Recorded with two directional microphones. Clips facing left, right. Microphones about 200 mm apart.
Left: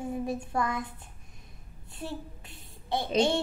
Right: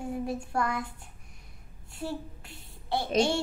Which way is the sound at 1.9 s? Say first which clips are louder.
Right 2 dB; 20° left (ahead or behind).